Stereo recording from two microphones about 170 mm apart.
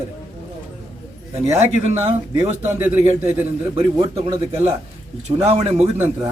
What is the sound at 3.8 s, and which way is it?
Speech, 35° right (ahead or behind).